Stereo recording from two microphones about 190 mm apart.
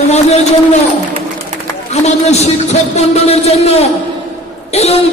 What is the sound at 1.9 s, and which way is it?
A man's voice, 35° left (ahead or behind).